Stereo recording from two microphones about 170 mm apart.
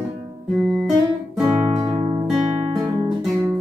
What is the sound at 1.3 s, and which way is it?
Music, 10° right (ahead or behind).